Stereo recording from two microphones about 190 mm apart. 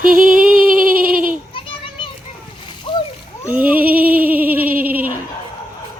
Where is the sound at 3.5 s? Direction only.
10° right (ahead or behind).